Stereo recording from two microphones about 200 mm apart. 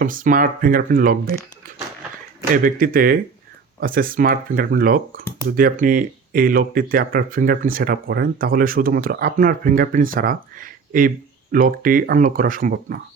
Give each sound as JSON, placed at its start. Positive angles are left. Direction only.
{"t": 0.0, "sound": "speech", "side_deg": -40}
{"t": 2.5, "sound": "speech", "side_deg": -45}